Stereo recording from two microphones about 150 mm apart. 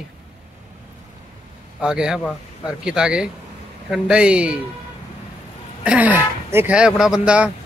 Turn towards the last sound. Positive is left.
turn(degrees=-5)  # may be behind; listen again after turning